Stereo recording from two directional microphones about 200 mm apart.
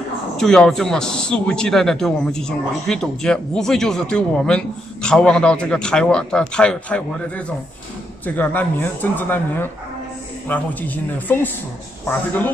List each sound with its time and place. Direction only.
0.4 s a man's voice: centre (ahead or behind)